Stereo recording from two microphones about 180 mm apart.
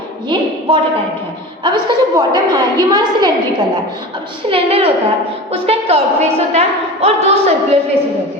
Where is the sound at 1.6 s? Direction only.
25° right (ahead or behind).